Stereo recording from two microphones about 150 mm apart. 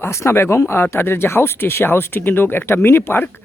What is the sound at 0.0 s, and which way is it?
Speech, 20° left (ahead or behind).